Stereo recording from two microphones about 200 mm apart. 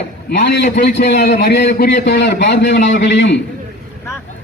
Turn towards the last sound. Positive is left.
turn(degrees=65)  # may be behind; listen again after turning